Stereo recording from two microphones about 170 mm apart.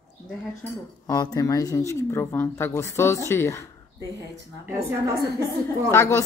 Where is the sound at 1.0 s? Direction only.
20° left (ahead or behind).